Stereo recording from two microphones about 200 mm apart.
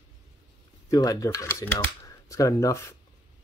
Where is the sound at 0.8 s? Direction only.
15° left (ahead or behind).